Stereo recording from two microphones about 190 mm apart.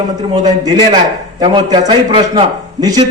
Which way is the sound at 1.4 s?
25° right (ahead or behind).